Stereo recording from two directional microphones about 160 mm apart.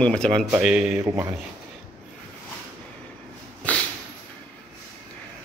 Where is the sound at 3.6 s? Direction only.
10° left (ahead or behind).